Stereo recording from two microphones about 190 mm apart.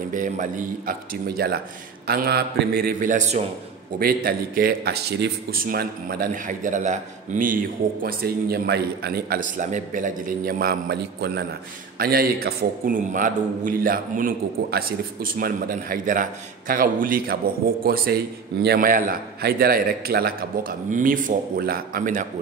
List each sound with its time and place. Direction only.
0.1 s a man's voice: 45° right (ahead or behind)
4.0 s a man's voice: 50° right (ahead or behind)